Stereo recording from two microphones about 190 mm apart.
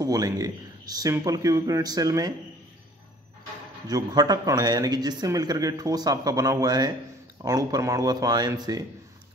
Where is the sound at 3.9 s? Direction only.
20° right (ahead or behind).